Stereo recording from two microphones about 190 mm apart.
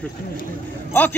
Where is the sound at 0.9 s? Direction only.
10° left (ahead or behind).